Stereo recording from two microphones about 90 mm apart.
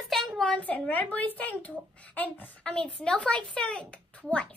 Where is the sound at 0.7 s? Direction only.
15° left (ahead or behind).